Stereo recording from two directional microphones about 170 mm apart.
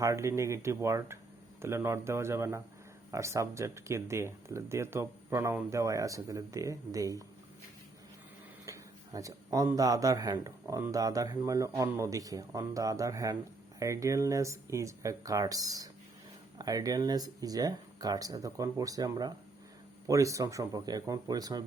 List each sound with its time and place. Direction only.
0.0 s speech: 15° right (ahead or behind)
8.6 s speech: 20° right (ahead or behind)